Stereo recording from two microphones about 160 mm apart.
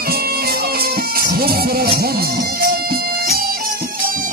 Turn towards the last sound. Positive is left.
turn(degrees=-75)  # may be behind; listen again after turning